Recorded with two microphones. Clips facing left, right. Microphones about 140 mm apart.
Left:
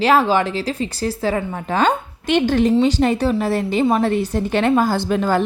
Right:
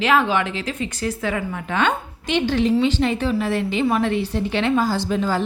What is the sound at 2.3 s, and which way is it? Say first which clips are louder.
A woman's voice: left 3 dB; 50° left (ahead or behind).